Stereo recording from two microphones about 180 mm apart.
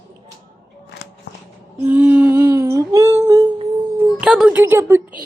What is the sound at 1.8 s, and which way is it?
Humming, 10° right (ahead or behind).